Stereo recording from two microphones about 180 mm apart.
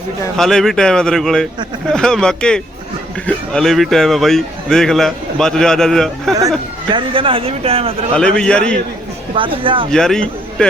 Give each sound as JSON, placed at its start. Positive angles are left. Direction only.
{"t": 0.3, "sound": "speech", "side_deg": 0}
{"t": 6.9, "sound": "a man's voice", "side_deg": -30}
{"t": 8.1, "sound": "speech", "side_deg": 5}
{"t": 9.3, "sound": "speech", "side_deg": -30}
{"t": 9.9, "sound": "a man's voice", "side_deg": 5}